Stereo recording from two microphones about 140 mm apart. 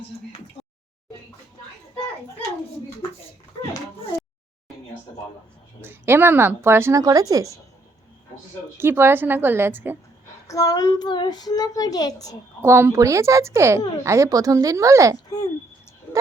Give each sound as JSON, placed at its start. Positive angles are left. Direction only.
{"t": 5.8, "sound": "speech", "side_deg": -15}
{"t": 8.8, "sound": "speech", "side_deg": -15}
{"t": 10.4, "sound": "a child's voice", "side_deg": 25}
{"t": 12.6, "sound": "speech", "side_deg": -20}
{"t": 16.1, "sound": "bow-wow", "side_deg": 15}